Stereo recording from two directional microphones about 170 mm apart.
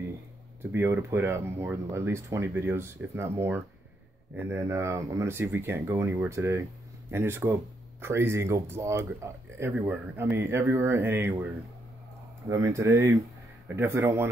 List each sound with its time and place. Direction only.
0.6 s speech: 15° right (ahead or behind)
12.4 s speech: 20° right (ahead or behind)